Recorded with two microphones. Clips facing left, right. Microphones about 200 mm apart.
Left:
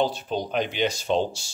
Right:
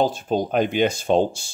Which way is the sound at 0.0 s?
45° right (ahead or behind).